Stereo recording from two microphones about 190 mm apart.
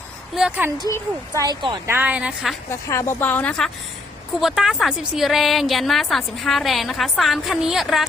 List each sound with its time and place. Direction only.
0.3 s a woman's voice: 5° right (ahead or behind)
0.9 s speech: 15° left (ahead or behind)
1.4 s speech: 20° right (ahead or behind)
2.0 s a woman's voice: 5° right (ahead or behind)
2.6 s a woman's voice: 15° left (ahead or behind); by 8.0 s centre (ahead or behind)